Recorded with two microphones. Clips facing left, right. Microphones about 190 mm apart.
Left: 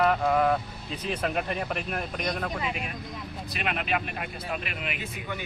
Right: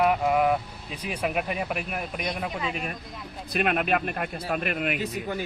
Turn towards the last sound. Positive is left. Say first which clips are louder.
# right 6 dB
turn(degrees=-50)  # may be behind; listen again after turning